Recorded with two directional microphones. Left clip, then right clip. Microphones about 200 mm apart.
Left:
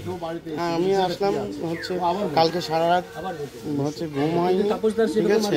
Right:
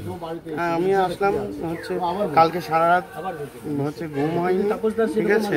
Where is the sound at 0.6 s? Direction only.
10° right (ahead or behind).